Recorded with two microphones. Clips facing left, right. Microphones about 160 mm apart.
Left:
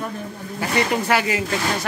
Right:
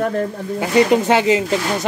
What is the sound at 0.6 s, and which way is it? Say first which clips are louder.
Speech: right 7 dB; 20° right (ahead or behind).